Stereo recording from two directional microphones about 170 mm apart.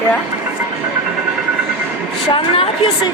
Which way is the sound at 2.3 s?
35° left (ahead or behind).